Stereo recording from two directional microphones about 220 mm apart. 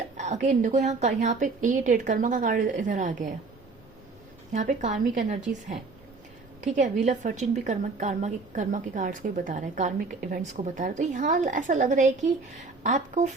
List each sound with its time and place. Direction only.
0.2 s a woman's voice: 30° right (ahead or behind)
4.5 s a woman's voice: 35° right (ahead or behind)